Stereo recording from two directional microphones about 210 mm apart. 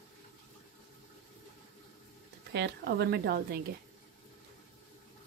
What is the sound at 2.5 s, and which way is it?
Speech, 50° right (ahead or behind).